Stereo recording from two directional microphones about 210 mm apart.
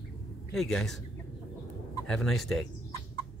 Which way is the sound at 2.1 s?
Centre (ahead or behind).